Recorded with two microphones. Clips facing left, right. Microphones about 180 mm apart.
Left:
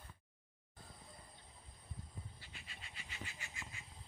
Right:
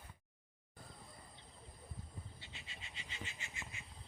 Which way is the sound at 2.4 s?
25° right (ahead or behind).